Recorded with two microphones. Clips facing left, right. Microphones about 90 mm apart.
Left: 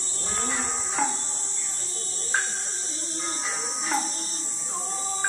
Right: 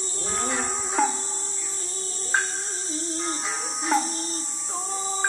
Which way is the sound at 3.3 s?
25° right (ahead or behind).